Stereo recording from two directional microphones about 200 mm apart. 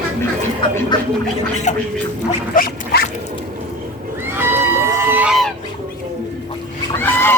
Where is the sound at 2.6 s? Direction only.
50° left (ahead or behind).